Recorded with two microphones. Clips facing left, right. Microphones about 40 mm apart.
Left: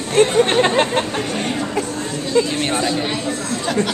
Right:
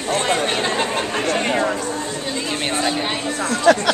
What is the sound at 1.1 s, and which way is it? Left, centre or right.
Speech, right.